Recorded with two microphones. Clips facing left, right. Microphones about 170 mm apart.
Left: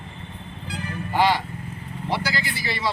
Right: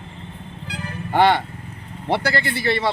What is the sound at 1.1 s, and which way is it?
Speech, 60° right (ahead or behind).